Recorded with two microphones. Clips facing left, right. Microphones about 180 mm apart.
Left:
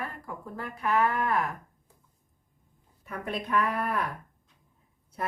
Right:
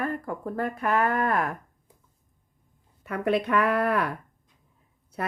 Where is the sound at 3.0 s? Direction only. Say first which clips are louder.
Right 9 dB; 75° right (ahead or behind).